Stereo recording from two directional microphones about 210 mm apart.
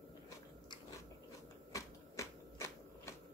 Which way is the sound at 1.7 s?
15° left (ahead or behind).